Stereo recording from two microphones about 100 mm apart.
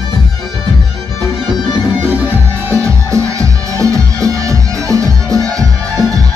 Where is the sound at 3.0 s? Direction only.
30° right (ahead or behind).